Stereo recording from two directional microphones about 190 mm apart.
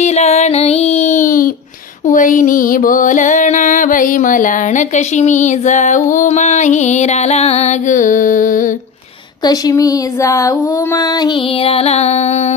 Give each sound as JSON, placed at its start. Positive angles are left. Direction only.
{"t": 0.0, "sound": "female singing", "side_deg": 35}
{"t": 2.0, "sound": "music", "side_deg": 45}
{"t": 9.4, "sound": "a sound", "side_deg": 20}